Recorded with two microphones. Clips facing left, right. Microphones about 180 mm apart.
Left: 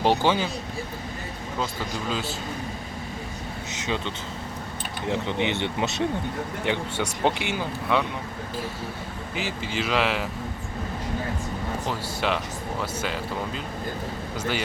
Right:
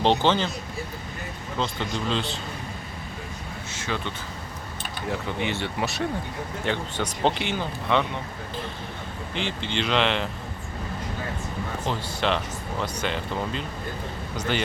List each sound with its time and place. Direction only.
0.0 s speech: 10° left (ahead or behind)
1.5 s speech: 5° left (ahead or behind)
3.7 s a sound: 20° left (ahead or behind)
5.0 s speech: 25° left (ahead or behind); by 8.0 s 10° left (ahead or behind)
9.3 s speech: 5° left (ahead or behind)
11.9 s speech: 10° left (ahead or behind)